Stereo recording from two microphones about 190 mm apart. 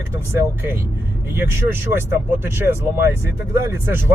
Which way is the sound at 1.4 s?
10° right (ahead or behind).